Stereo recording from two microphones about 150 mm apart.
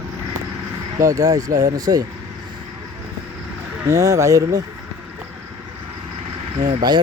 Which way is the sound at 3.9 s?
20° right (ahead or behind).